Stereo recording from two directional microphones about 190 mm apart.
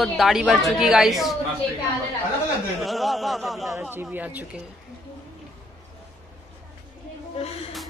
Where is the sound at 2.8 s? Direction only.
Centre (ahead or behind).